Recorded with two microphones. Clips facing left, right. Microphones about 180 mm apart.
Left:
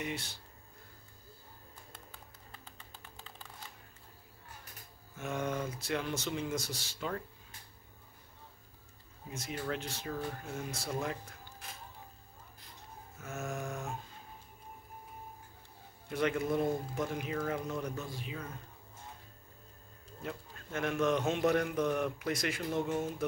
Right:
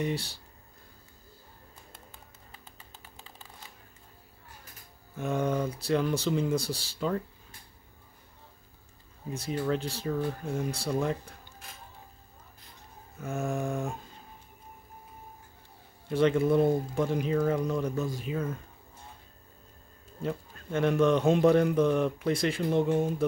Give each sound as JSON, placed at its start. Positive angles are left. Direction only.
{"t": 0.0, "sound": "speech", "side_deg": -35}
{"t": 5.1, "sound": "speech", "side_deg": -35}
{"t": 9.3, "sound": "speech", "side_deg": -35}
{"t": 13.2, "sound": "speech", "side_deg": -30}
{"t": 16.1, "sound": "speech", "side_deg": -30}
{"t": 20.2, "sound": "speech", "side_deg": -30}